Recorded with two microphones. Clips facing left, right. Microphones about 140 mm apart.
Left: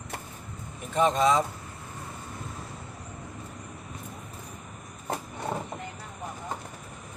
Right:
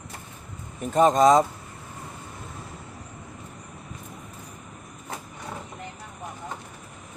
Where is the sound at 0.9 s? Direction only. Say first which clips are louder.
Right 6 dB; 40° right (ahead or behind).